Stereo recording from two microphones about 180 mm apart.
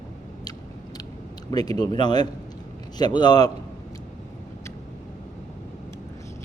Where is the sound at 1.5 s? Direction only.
20° left (ahead or behind).